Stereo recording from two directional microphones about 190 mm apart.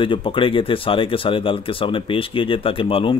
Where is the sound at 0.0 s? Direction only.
25° left (ahead or behind).